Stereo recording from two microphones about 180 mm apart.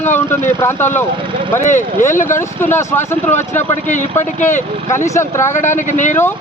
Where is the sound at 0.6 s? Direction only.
10° left (ahead or behind).